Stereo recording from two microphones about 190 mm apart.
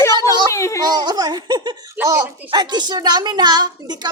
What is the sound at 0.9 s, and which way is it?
Speech, 20° right (ahead or behind).